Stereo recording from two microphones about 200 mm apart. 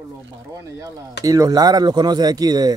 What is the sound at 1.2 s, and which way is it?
Speech, 15° right (ahead or behind).